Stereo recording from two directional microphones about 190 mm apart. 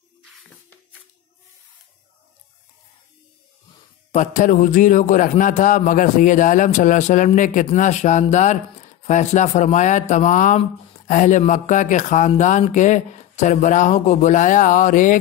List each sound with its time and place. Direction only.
4.1 s a man's voice: 40° left (ahead or behind)